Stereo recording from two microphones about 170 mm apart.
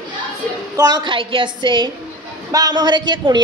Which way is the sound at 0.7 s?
25° right (ahead or behind).